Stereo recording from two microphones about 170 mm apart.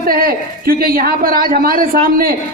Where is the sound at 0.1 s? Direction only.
60° right (ahead or behind).